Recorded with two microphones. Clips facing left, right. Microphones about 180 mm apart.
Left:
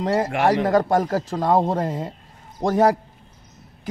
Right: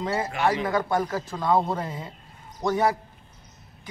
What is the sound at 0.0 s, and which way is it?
Speech, 40° left (ahead or behind).